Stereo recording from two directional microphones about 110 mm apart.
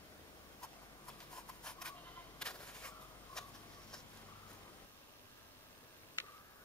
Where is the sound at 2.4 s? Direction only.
10° left (ahead or behind).